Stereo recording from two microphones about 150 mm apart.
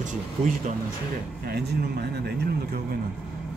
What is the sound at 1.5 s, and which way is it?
Speech, 90° right.